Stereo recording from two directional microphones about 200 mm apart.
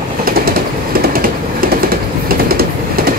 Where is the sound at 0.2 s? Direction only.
50° right (ahead or behind).